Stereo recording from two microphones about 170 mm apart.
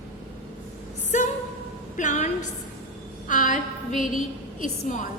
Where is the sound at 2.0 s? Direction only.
45° left (ahead or behind).